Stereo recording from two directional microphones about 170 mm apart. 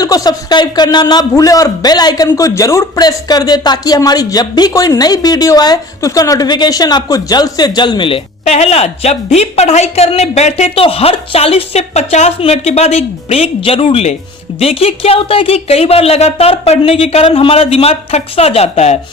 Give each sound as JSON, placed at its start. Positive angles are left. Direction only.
{"t": 0.0, "sound": "a man's voice", "side_deg": 20}